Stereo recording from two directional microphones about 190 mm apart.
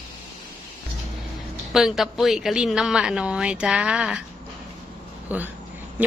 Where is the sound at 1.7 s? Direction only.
Centre (ahead or behind).